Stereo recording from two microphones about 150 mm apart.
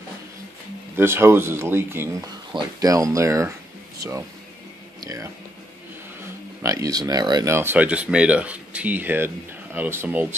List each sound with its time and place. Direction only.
0.9 s speech: 15° right (ahead or behind)
5.0 s speech: 20° right (ahead or behind)
6.6 s speech: 20° right (ahead or behind)
7.5 s speech: 10° right (ahead or behind)